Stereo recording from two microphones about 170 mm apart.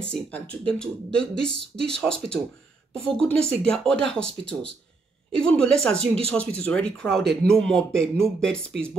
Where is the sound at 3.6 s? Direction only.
5° left (ahead or behind).